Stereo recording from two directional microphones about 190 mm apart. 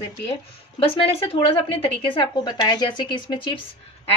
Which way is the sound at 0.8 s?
30° left (ahead or behind).